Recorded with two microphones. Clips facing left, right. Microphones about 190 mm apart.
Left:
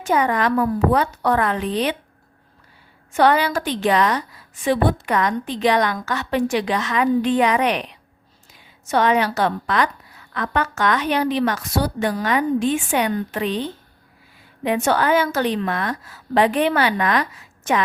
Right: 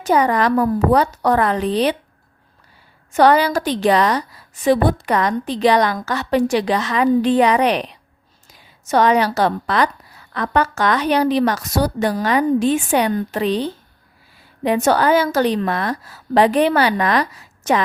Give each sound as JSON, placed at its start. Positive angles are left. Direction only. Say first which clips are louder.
{"t": 0.0, "sound": "a woman's voice", "louder": "right 3 dB", "side_deg": -35}
{"t": 3.1, "sound": "a woman's voice", "louder": "right 3 dB", "side_deg": -40}